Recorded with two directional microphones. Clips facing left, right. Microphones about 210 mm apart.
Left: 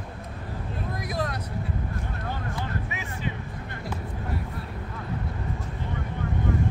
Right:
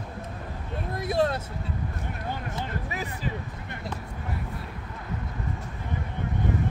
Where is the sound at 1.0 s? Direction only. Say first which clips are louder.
Right 8 dB; 30° right (ahead or behind).